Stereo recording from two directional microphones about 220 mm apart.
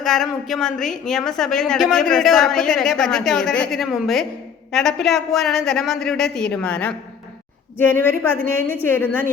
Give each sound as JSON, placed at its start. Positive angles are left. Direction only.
{"t": 0.0, "sound": "a woman's voice", "side_deg": 0}